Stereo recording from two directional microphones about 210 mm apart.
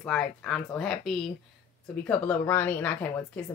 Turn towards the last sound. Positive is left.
turn(degrees=5)  # may be behind; listen again after turning